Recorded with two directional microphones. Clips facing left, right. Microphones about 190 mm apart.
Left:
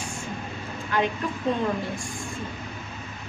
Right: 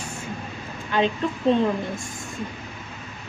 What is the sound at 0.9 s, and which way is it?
Speech, 20° right (ahead or behind).